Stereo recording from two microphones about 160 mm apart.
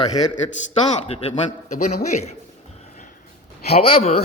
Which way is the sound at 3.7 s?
40° left (ahead or behind).